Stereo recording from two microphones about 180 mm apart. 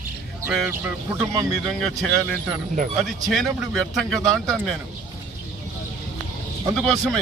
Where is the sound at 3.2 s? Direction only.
Centre (ahead or behind).